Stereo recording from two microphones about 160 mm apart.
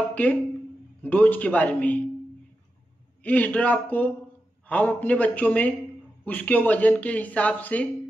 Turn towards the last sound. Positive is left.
turn(degrees=10)  # may be behind; listen again after turning